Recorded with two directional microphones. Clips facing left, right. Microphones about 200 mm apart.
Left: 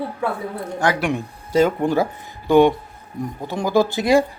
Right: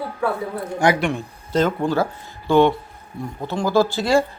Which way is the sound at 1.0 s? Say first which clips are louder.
Left 1 dB; 10° left (ahead or behind).